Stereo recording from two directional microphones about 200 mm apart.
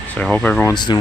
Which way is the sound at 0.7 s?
20° left (ahead or behind).